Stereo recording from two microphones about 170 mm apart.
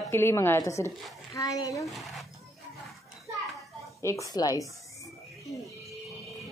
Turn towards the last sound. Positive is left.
turn(degrees=0)  # may be behind; listen again after turning